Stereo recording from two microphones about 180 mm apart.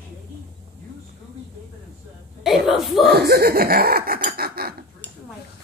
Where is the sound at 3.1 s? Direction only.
60° right (ahead or behind).